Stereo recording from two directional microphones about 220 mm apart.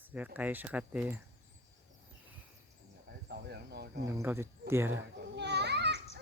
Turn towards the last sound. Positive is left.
turn(degrees=-50)  # may be behind; listen again after turning